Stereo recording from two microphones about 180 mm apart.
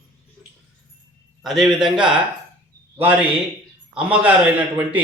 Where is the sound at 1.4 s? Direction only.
Centre (ahead or behind).